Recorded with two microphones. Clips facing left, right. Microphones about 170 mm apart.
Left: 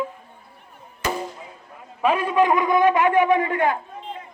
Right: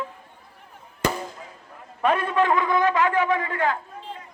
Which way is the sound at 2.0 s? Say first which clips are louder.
Left 2 dB; 10° left (ahead or behind).